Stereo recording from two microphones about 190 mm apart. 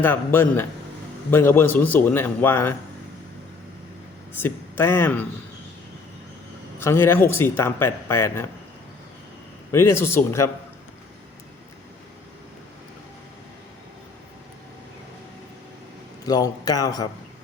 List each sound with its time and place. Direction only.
0.0 s a man's voice: 10° left (ahead or behind)
4.4 s a man's voice: 10° left (ahead or behind)
6.7 s a man's voice: 15° left (ahead or behind)
9.7 s a man's voice: 15° left (ahead or behind)
16.2 s a man's voice: 20° left (ahead or behind)